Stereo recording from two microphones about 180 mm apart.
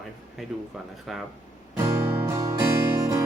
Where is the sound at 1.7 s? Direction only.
15° right (ahead or behind).